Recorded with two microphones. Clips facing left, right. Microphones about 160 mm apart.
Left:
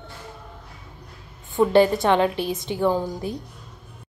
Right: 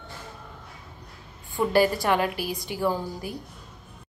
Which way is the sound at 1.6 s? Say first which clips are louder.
Left 5 dB; 25° left (ahead or behind).